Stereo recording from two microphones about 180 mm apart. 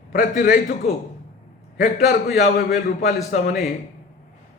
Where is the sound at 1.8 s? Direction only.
45° left (ahead or behind).